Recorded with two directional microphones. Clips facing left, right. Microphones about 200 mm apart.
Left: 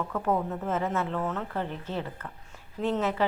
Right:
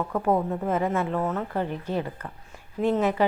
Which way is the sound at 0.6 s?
10° right (ahead or behind).